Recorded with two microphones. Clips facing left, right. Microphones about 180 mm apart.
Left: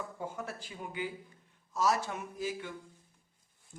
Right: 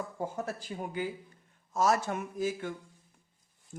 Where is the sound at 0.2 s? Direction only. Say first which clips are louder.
Right 5 dB; 40° right (ahead or behind).